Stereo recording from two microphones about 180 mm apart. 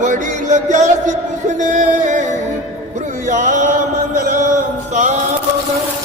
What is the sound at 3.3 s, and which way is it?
Music, 45° right (ahead or behind).